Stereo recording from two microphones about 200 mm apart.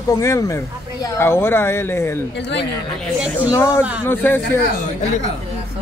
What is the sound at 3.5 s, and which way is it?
Speech, 15° left (ahead or behind).